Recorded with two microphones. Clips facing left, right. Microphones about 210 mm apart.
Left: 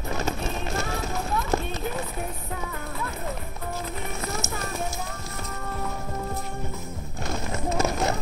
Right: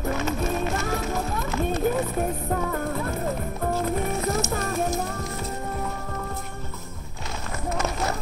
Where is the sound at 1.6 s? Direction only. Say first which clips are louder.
Right 7 dB; 50° right (ahead or behind).